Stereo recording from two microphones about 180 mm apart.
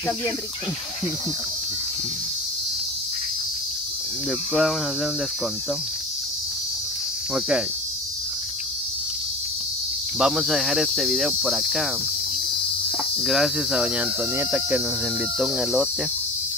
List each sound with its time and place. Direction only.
4.6 s cricket: centre (ahead or behind)
7.3 s cricket: 5° right (ahead or behind)
10.1 s cricket: centre (ahead or behind)
13.2 s cricket: centre (ahead or behind)